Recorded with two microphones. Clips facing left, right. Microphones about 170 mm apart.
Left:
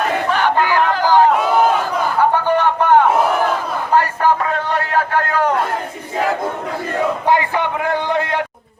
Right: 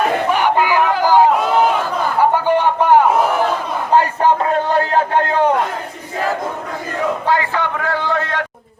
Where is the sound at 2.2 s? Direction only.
10° right (ahead or behind).